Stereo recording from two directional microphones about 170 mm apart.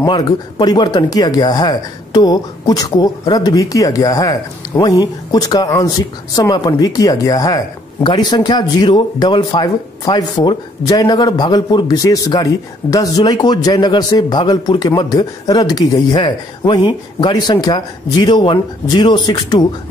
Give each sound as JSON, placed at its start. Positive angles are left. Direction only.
{"t": 0.0, "sound": "speech", "side_deg": 25}